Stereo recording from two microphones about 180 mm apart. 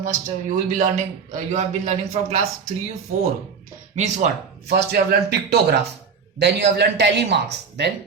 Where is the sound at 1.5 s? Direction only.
40° right (ahead or behind).